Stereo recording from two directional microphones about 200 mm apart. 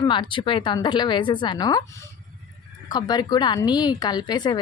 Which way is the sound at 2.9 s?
20° left (ahead or behind).